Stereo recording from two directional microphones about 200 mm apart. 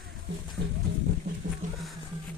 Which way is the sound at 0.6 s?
60° right (ahead or behind).